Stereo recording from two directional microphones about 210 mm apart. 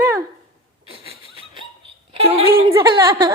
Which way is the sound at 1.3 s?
25° right (ahead or behind).